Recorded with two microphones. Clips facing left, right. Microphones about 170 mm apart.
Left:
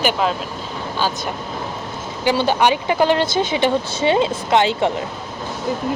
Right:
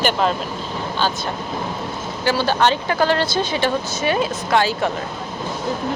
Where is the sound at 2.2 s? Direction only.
20° left (ahead or behind).